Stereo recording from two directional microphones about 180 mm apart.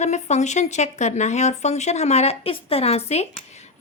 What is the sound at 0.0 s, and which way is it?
A woman's voice, 40° left (ahead or behind).